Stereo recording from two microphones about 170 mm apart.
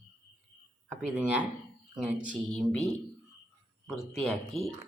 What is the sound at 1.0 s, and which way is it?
Speech, 5° right (ahead or behind).